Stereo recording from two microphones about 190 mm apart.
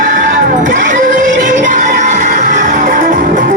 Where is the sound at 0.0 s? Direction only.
45° right (ahead or behind).